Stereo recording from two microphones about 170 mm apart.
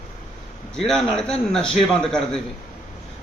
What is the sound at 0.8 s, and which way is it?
Speech, 5° left (ahead or behind).